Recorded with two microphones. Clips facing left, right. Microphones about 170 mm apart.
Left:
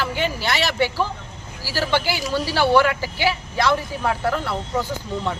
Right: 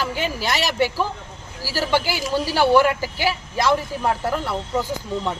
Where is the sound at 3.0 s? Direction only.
40° right (ahead or behind).